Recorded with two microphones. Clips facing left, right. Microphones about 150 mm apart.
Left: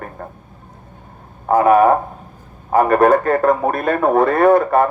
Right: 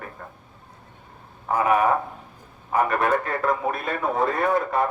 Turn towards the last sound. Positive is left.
turn(degrees=55)  # may be behind; listen again after turning